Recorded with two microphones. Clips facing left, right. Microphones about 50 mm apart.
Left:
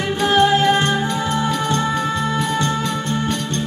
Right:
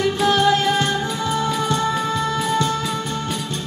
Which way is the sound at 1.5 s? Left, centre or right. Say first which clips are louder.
Left 1 dB; centre.